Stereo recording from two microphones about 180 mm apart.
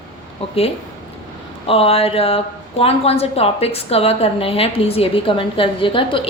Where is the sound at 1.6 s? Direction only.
30° left (ahead or behind).